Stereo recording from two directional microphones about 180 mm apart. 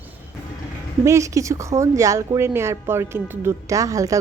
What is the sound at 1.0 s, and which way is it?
A woman's voice, 15° right (ahead or behind).